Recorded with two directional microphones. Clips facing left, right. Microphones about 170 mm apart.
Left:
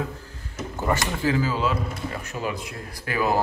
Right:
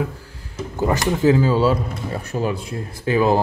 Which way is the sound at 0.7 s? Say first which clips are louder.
Right 6 dB; 20° right (ahead or behind).